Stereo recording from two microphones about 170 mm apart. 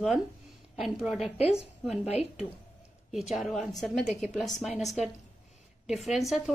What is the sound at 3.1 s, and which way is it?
A woman's voice, centre (ahead or behind).